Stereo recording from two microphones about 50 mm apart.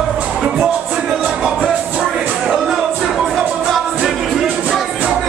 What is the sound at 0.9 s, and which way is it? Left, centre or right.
Music, right.